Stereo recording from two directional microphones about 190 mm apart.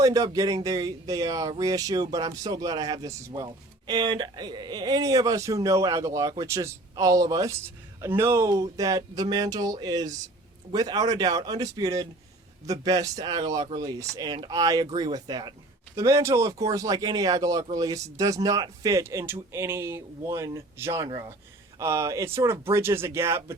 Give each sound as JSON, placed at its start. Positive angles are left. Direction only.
{"t": 0.0, "sound": "speech", "side_deg": -20}